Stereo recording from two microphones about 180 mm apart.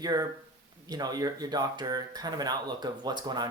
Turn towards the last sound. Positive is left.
turn(degrees=-25)  # may be behind; listen again after turning